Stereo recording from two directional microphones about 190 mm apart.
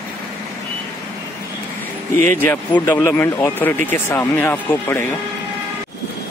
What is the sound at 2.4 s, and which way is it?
Speech, 10° left (ahead or behind).